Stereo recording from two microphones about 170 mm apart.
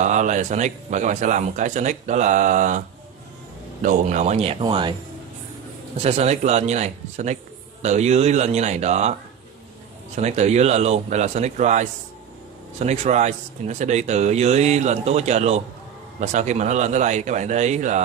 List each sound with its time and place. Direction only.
0.0 s speech: 45° right (ahead or behind)
3.8 s speech: 50° right (ahead or behind); by 4.9 s 30° right (ahead or behind)
5.9 s speech: 40° right (ahead or behind)
10.1 s speech: 40° right (ahead or behind)